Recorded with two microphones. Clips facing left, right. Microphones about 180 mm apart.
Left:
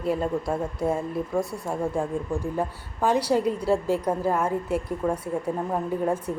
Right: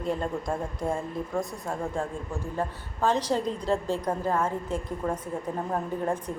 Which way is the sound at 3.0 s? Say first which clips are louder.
Left 4 dB; 10° left (ahead or behind).